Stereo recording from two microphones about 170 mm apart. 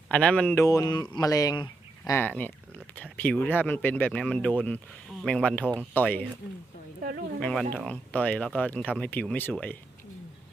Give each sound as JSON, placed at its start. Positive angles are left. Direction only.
{"t": 0.1, "sound": "speech", "side_deg": 5}
{"t": 0.6, "sound": "speech", "side_deg": 20}
{"t": 2.9, "sound": "speech", "side_deg": 10}
{"t": 7.3, "sound": "speech", "side_deg": 5}